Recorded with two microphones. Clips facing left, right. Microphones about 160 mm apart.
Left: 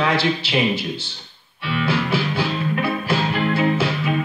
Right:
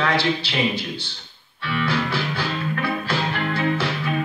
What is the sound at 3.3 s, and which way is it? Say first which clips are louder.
Music: left 5 dB; 20° left (ahead or behind).